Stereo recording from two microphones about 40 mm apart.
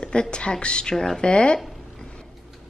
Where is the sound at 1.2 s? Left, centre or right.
Left.